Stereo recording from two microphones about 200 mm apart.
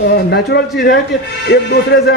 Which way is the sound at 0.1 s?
55° left (ahead or behind).